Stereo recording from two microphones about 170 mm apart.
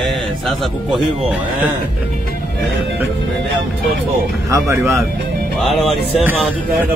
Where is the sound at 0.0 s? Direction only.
Centre (ahead or behind).